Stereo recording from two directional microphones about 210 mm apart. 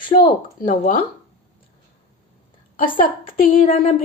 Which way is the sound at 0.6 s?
40° left (ahead or behind).